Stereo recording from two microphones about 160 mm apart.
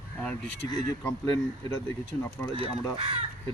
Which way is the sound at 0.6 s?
20° left (ahead or behind).